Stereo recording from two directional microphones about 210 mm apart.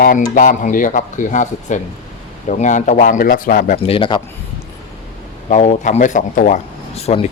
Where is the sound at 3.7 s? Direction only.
25° left (ahead or behind).